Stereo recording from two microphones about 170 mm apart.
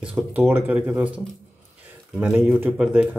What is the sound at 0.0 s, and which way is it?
Speech, 5° right (ahead or behind).